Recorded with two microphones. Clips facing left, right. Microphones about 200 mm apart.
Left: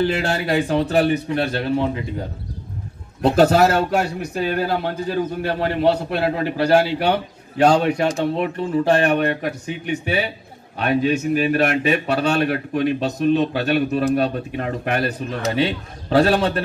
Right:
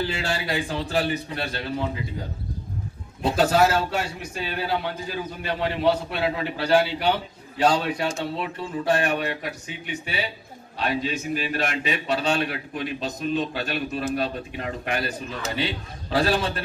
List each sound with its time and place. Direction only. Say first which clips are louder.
0.0 s a man's voice: left 7 dB; 60° left (ahead or behind)
3.2 s a man's voice: left 5 dB; 60° left (ahead or behind)
10.0 s a man's voice: left 8 dB; 60° left (ahead or behind)